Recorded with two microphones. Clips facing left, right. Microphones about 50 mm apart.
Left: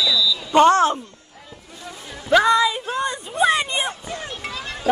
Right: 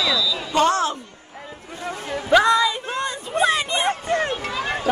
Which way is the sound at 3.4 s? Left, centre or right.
Centre.